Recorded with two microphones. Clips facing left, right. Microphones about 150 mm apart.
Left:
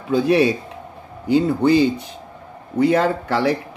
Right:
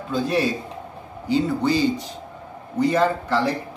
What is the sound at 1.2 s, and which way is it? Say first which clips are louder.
Speech: left 4 dB; 55° left (ahead or behind).